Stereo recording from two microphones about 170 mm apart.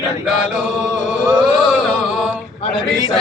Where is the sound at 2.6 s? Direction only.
25° left (ahead or behind).